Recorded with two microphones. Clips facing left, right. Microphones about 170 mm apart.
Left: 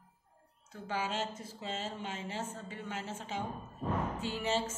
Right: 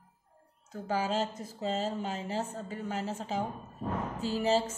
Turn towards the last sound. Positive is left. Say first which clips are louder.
# right 6 dB
turn(degrees=-35)  # may be behind; listen again after turning